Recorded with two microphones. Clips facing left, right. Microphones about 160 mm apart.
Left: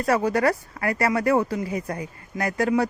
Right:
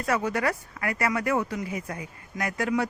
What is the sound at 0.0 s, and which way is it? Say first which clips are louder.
Speech: left 5 dB; 35° left (ahead or behind).